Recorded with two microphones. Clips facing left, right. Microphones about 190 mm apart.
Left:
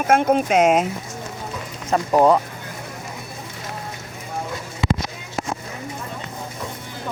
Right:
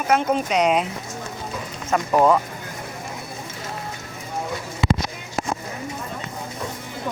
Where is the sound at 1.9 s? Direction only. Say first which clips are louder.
Left 1 dB; 35° left (ahead or behind).